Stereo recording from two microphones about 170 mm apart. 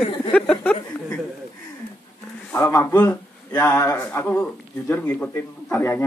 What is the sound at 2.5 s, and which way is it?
A man's voice, 15° left (ahead or behind).